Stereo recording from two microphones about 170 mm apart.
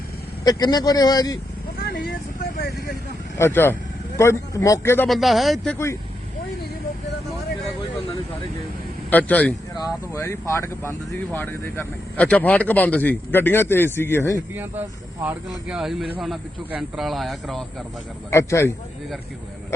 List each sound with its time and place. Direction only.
0.4 s speech: 25° left (ahead or behind)
1.8 s vehicle: 60° left (ahead or behind)
3.3 s speech: 15° left (ahead or behind)
5.0 s speech: centre (ahead or behind)
9.0 s speech: 10° left (ahead or behind)
14.5 s speech: 10° right (ahead or behind)
18.3 s speech: 15° left (ahead or behind)